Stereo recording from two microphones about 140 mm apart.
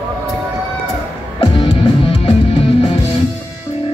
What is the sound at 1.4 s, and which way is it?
Music, 40° left (ahead or behind).